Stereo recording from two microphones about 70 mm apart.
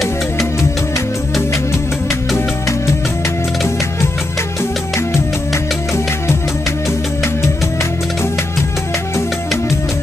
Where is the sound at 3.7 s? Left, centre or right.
Left.